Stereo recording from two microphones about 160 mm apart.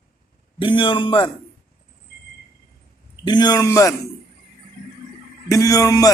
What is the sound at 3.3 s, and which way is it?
Speech, 25° left (ahead or behind).